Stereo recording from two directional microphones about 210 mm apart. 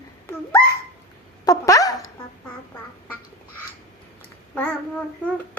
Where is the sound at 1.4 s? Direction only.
15° left (ahead or behind).